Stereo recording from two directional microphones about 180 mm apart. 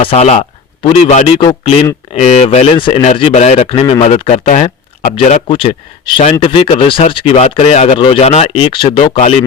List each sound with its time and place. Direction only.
0.0 s speech: 35° left (ahead or behind)
3.7 s speech: 25° left (ahead or behind)